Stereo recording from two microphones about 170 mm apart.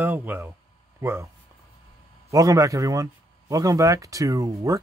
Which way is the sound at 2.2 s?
20° right (ahead or behind).